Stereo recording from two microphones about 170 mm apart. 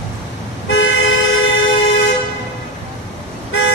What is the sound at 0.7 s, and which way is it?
Toot, 90° left.